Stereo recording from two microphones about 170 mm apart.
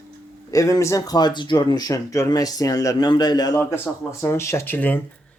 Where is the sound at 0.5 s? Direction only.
20° left (ahead or behind).